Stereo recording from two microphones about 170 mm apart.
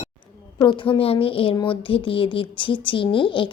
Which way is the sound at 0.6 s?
25° left (ahead or behind).